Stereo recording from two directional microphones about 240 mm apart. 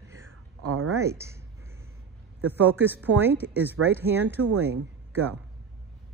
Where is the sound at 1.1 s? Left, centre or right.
Centre.